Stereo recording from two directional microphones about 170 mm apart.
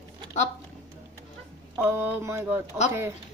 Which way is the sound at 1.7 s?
10° right (ahead or behind).